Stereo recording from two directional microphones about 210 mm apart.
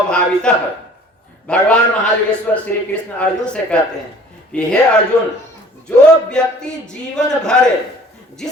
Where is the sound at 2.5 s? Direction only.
10° left (ahead or behind).